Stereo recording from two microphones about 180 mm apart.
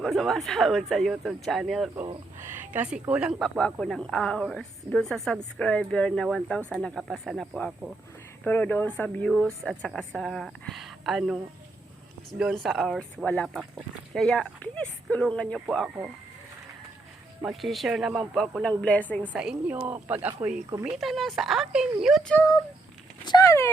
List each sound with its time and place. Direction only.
0.0 s a woman's voice: centre (ahead or behind)
2.4 s a woman's voice: 10° right (ahead or behind)
12.4 s a woman's voice: centre (ahead or behind)
17.4 s a woman's voice: centre (ahead or behind)
19.3 s speech: 5° right (ahead or behind)
20.7 s speech: 20° right (ahead or behind)
20.9 s a woman's voice: centre (ahead or behind)
22.4 s speech: 20° left (ahead or behind)